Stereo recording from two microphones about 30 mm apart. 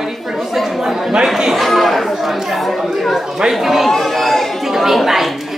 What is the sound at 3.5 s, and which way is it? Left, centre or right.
Speech, centre.